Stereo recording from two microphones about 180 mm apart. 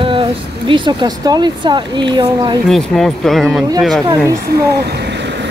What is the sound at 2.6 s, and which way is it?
Speech, centre (ahead or behind).